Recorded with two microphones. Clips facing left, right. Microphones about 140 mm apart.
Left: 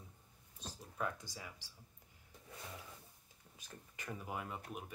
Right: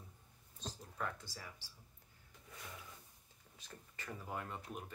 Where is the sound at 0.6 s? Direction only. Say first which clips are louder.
Left 1 dB; 10° left (ahead or behind).